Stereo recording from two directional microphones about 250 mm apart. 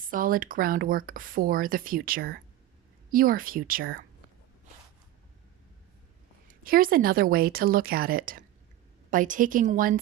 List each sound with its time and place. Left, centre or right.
0.0 s speech: right
6.7 s speech: right